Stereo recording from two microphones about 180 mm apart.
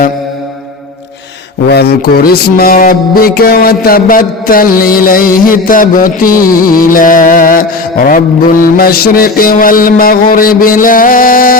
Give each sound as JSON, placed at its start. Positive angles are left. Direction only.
{"t": 1.6, "sound": "music", "side_deg": 65}